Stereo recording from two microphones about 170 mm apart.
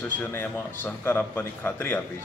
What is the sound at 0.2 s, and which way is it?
A man's voice, 10° left (ahead or behind).